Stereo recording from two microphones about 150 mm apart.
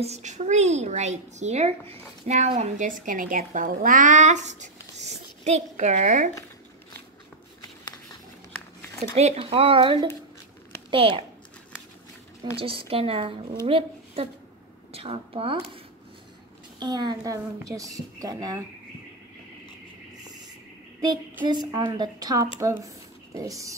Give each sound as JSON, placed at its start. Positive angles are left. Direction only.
{"t": 0.0, "sound": "a woman's voice", "side_deg": -50}
{"t": 4.9, "sound": "a sound", "side_deg": -50}
{"t": 9.1, "sound": "speech", "side_deg": -45}
{"t": 12.5, "sound": "a woman's voice", "side_deg": -35}
{"t": 16.8, "sound": "a woman's voice", "side_deg": -30}
{"t": 21.5, "sound": "a woman's voice", "side_deg": -30}